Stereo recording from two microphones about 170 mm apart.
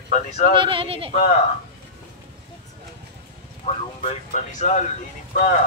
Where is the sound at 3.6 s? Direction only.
35° left (ahead or behind).